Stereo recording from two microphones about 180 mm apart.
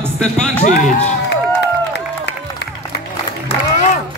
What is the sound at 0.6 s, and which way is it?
Speech, 40° left (ahead or behind).